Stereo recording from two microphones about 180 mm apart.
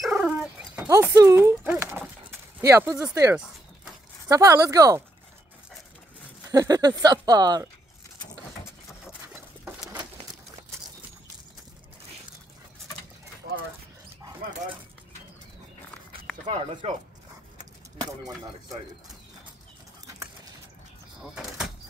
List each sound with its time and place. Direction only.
0.0 s dog: 5° right (ahead or behind)
0.8 s a sound: 15° right (ahead or behind)
2.7 s speech: 15° right (ahead or behind)
4.3 s speech: 20° right (ahead or behind)
6.5 s speech: 20° right (ahead or behind)
16.4 s speech: 30° right (ahead or behind)
18.2 s speech: 20° right (ahead or behind)
21.4 s vehicle: 5° right (ahead or behind)